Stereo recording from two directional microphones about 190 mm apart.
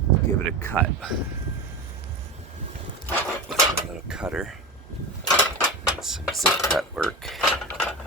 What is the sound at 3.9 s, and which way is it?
Mechanisms, 5° right (ahead or behind).